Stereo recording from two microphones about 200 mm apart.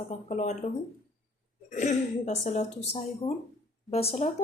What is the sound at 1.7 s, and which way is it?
Speech, 35° left (ahead or behind).